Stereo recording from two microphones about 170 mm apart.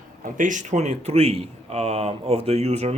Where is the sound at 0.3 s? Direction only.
50° right (ahead or behind).